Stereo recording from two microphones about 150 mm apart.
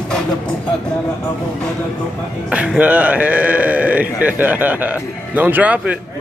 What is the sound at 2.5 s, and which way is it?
Speech, 10° right (ahead or behind).